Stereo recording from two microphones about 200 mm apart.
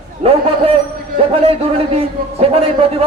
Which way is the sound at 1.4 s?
30° right (ahead or behind).